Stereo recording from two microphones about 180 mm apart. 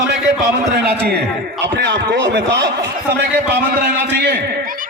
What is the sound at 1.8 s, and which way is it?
Speech, 85° right.